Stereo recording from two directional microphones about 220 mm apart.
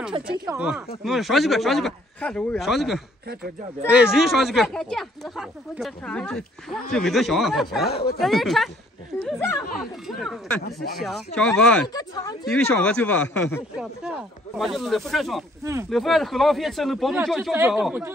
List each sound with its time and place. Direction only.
0.2 s speech: 25° right (ahead or behind)
0.5 s speech: 5° right (ahead or behind)
7.9 s speech: 45° left (ahead or behind)
8.2 s speech: centre (ahead or behind)
10.0 s speech: centre (ahead or behind)
10.6 s speech: 45° left (ahead or behind)
11.0 s speech: centre (ahead or behind)
11.9 s speech: 15° left (ahead or behind)
12.4 s speech: 5° left (ahead or behind)
15.6 s speech: 15° right (ahead or behind)
15.9 s speech: centre (ahead or behind)